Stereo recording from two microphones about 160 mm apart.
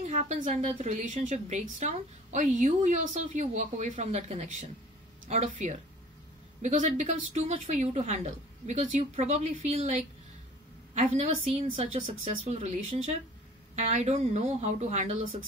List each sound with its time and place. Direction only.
0.0 s a woman's voice: 50° right (ahead or behind)